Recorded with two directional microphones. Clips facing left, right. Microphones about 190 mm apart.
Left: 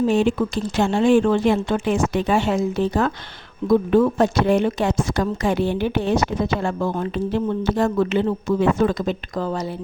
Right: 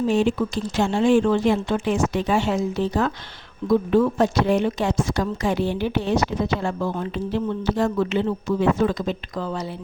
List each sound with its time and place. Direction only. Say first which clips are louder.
0.1 s speech: left 2 dB; 55° left (ahead or behind)